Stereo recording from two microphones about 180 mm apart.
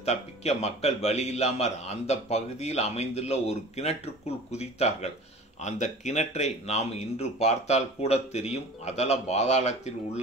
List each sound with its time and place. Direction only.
0.0 s a man's voice: 35° left (ahead or behind)